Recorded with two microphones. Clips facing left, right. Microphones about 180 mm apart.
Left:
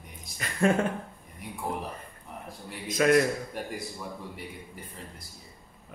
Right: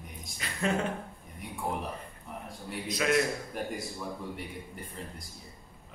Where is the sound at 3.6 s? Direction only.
Centre (ahead or behind).